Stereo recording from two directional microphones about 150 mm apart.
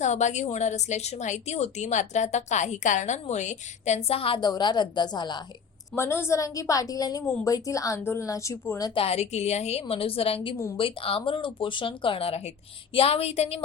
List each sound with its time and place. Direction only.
0.0 s a woman's voice: 50° left (ahead or behind); by 5.4 s 30° left (ahead or behind)
6.0 s a woman's voice: 15° left (ahead or behind)
9.0 s speech: 45° left (ahead or behind)